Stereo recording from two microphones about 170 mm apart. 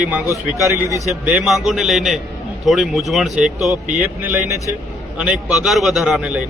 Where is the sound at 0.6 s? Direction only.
20° right (ahead or behind).